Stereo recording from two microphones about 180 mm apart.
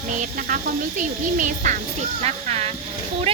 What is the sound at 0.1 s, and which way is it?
Speech, 50° right (ahead or behind).